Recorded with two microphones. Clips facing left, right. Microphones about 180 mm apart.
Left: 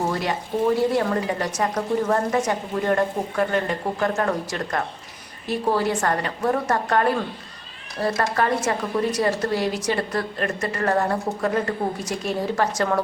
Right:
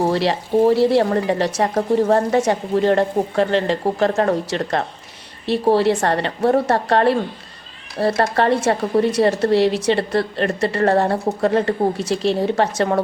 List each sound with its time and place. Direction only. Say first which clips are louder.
0.3 s a woman's voice: right 6 dB; 30° right (ahead or behind)